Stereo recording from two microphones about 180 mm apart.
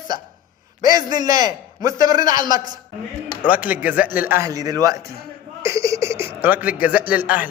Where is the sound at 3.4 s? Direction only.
10° right (ahead or behind).